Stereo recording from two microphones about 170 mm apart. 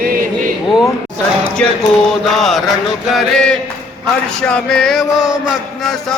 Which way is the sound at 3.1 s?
Centre (ahead or behind).